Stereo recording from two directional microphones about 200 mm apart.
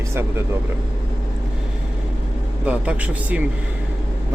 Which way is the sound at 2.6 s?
5° right (ahead or behind).